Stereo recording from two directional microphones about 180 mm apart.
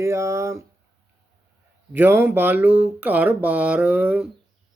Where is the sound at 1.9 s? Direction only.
10° right (ahead or behind).